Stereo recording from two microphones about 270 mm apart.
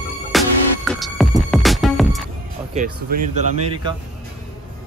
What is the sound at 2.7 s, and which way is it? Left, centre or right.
Speech, right.